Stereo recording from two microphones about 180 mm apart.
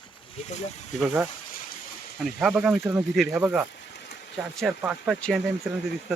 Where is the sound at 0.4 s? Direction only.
35° left (ahead or behind).